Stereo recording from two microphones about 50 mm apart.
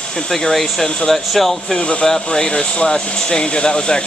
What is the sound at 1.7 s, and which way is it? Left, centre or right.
Speech, left.